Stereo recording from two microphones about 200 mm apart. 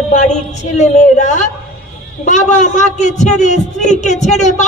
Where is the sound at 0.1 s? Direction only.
35° left (ahead or behind).